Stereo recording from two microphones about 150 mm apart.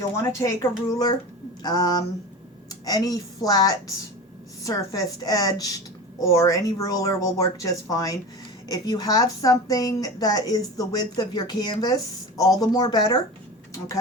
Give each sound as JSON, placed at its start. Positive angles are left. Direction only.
{"t": 0.2, "sound": "a woman's voice", "side_deg": 20}